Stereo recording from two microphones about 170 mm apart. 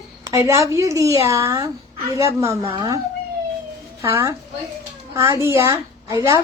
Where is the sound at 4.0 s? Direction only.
15° right (ahead or behind).